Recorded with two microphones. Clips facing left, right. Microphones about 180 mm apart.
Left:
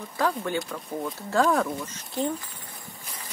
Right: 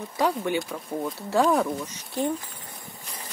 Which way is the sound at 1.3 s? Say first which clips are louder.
Right 1 dB; 15° right (ahead or behind).